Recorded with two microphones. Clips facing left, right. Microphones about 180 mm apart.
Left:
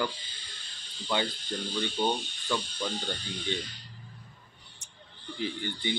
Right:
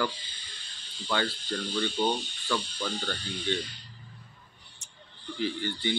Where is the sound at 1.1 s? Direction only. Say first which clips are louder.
Right 1 dB; 15° left (ahead or behind).